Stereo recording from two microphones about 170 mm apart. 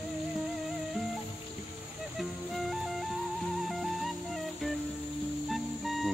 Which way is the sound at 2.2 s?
Centre (ahead or behind).